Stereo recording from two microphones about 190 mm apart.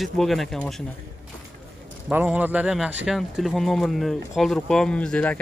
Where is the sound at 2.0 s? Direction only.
10° right (ahead or behind).